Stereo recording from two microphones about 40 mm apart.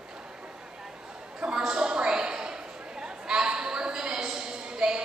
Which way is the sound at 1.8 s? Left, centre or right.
Right.